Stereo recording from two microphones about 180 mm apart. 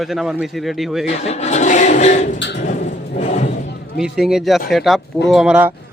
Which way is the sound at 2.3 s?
75° left (ahead or behind).